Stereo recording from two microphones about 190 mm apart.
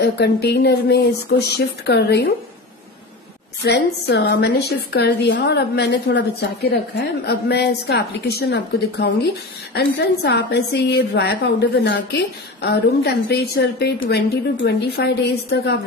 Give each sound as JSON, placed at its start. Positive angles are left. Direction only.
{"t": 0.0, "sound": "a woman's voice", "side_deg": 60}
{"t": 3.6, "sound": "a woman's voice", "side_deg": 60}